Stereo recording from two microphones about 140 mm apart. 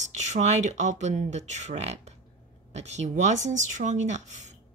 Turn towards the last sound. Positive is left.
turn(degrees=-60)  # may be behind; listen again after turning